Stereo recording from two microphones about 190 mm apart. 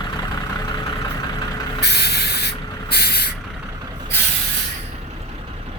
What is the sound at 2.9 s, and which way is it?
Vehicle, 55° left (ahead or behind).